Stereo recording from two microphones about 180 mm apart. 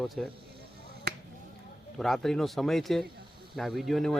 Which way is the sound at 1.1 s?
60° right (ahead or behind).